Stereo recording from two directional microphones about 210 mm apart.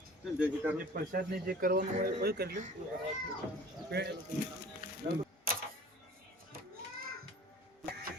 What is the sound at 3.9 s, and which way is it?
Speech, 50° right (ahead or behind).